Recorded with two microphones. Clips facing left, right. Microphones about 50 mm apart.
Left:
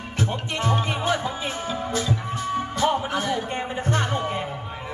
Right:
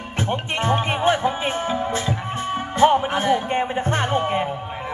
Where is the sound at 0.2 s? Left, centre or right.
Right.